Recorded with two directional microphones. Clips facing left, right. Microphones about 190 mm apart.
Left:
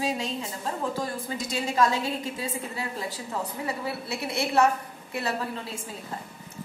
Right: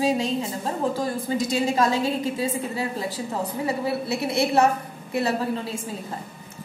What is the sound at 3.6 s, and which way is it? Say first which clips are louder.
A woman's voice: right 6 dB; 35° right (ahead or behind).